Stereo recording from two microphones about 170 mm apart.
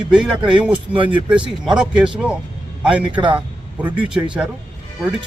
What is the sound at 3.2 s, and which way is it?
Speech, 30° right (ahead or behind).